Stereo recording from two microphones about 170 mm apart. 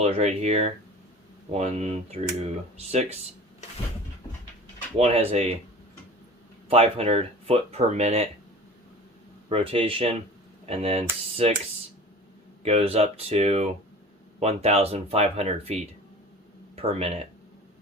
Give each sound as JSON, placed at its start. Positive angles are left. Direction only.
{"t": 0.0, "sound": "speech", "side_deg": -40}
{"t": 4.9, "sound": "speech", "side_deg": -40}
{"t": 6.7, "sound": "speech", "side_deg": -35}
{"t": 9.5, "sound": "speech", "side_deg": -35}
{"t": 12.6, "sound": "speech", "side_deg": -35}